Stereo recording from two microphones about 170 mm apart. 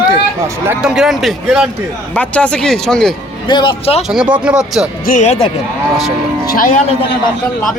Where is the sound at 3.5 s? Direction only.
25° left (ahead or behind).